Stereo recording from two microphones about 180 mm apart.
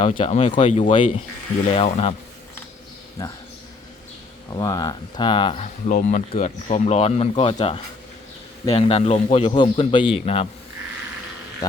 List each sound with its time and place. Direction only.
0.2 s speech: 35° left (ahead or behind)
4.5 s speech: 20° left (ahead or behind)
5.6 s speech: 45° left (ahead or behind)